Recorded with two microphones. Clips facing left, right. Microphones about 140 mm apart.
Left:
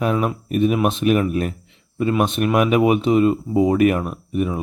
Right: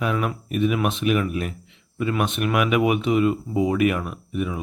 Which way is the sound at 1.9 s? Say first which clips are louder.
Left 5 dB; 30° left (ahead or behind).